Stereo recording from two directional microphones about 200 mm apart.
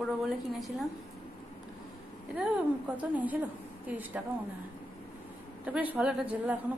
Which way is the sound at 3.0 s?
10° right (ahead or behind).